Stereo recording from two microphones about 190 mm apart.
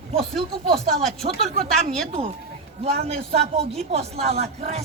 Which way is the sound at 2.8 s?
35° right (ahead or behind).